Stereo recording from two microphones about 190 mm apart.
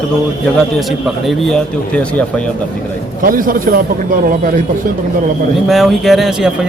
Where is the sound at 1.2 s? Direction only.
5° left (ahead or behind).